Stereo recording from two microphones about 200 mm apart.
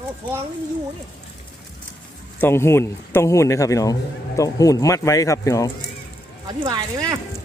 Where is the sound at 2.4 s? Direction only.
10° left (ahead or behind).